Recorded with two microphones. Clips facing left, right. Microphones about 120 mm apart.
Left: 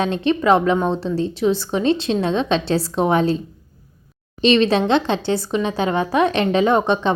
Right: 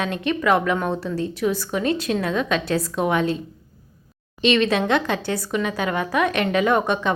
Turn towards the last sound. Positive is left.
turn(degrees=30)  # may be behind; listen again after turning